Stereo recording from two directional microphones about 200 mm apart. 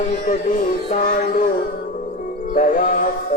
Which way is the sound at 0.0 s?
40° left (ahead or behind).